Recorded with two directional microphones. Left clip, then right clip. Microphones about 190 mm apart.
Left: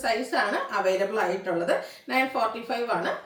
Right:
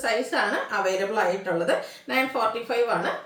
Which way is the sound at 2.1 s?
10° right (ahead or behind).